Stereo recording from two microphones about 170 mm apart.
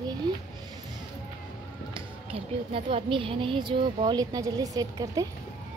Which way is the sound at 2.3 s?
35° right (ahead or behind).